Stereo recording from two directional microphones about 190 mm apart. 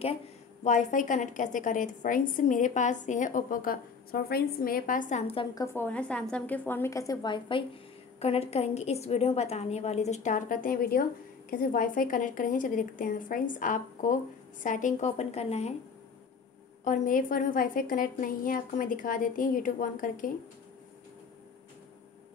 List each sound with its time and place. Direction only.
0.7 s a woman's voice: 40° left (ahead or behind)
16.8 s a woman's voice: 45° left (ahead or behind)